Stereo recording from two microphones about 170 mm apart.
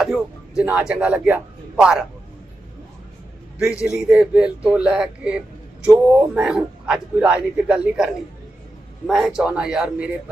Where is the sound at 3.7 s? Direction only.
20° left (ahead or behind).